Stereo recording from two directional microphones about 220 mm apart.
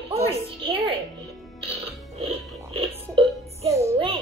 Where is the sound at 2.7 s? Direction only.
25° right (ahead or behind).